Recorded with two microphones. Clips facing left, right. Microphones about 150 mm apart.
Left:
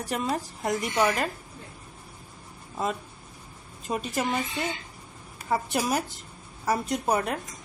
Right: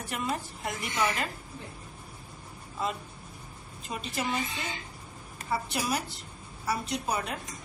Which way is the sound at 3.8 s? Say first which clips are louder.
Left 7 dB; 45° left (ahead or behind).